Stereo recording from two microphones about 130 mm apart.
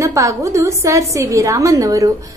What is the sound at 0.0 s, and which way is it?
A woman's voice, 25° right (ahead or behind).